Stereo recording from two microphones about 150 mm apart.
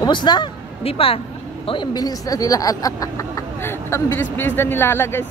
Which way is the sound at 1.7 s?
30° left (ahead or behind).